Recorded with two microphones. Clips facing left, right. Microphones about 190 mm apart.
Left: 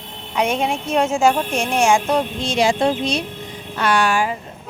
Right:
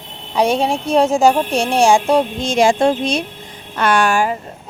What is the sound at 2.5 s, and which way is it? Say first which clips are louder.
Speech: right 4 dB; 50° right (ahead or behind).